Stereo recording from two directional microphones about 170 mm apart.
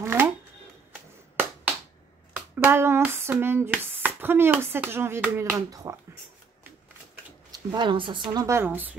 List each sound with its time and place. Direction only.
0.0 s a sound: 15° right (ahead or behind)
2.3 s hands: 15° right (ahead or behind)
7.5 s speech: 25° right (ahead or behind)
8.3 s hands: 20° right (ahead or behind)